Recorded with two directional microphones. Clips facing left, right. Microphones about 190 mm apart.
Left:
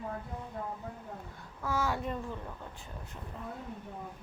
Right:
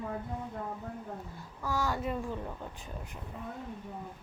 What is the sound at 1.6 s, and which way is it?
A child's voice, centre (ahead or behind).